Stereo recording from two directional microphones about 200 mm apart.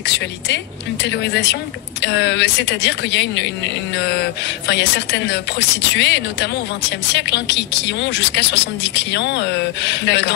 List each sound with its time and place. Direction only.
0.0 s speech: 60° left (ahead or behind)